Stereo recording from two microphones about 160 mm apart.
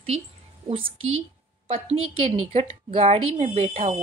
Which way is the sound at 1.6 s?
35° right (ahead or behind).